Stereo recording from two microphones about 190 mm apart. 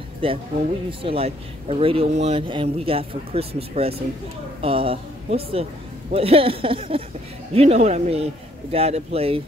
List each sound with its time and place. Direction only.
0.2 s speech: 30° right (ahead or behind)